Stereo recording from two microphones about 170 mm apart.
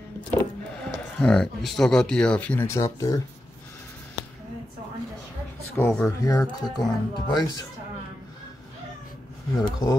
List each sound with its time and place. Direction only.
0.3 s a sound: 15° left (ahead or behind)
1.1 s speech: 5° left (ahead or behind)
5.8 s speech: 15° left (ahead or behind)
9.7 s speech: 25° left (ahead or behind)